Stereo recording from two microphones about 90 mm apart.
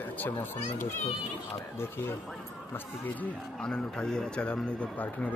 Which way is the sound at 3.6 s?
10° left (ahead or behind).